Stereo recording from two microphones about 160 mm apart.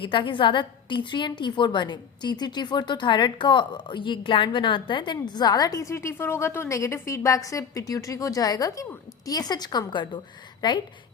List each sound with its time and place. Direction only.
0.0 s a woman's voice: 30° left (ahead or behind)